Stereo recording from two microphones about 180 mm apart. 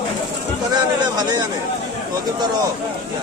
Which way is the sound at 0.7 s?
25° right (ahead or behind).